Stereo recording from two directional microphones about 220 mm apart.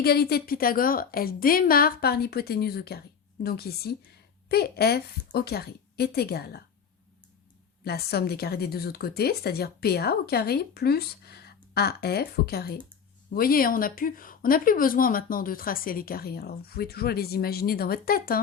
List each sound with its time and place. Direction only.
0.0 s a woman's voice: 45° left (ahead or behind)
7.9 s a woman's voice: 45° left (ahead or behind)